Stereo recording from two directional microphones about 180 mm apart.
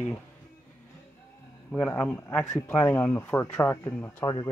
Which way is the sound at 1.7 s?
5° left (ahead or behind).